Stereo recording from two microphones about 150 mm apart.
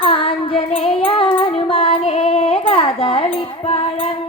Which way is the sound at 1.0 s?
35° left (ahead or behind).